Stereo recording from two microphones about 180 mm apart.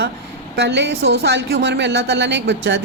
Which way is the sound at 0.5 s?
70° right (ahead or behind).